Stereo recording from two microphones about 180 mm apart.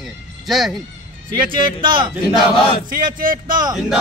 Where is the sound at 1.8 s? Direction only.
25° right (ahead or behind).